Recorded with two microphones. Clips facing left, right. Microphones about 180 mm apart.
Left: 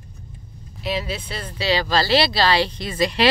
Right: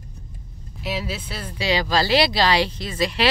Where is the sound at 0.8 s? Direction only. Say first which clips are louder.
Left 2 dB; 5° right (ahead or behind).